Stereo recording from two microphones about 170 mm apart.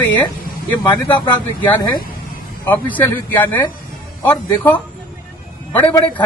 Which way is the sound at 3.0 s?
10° left (ahead or behind).